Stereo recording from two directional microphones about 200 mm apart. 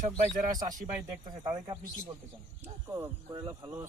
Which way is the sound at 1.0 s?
20° right (ahead or behind).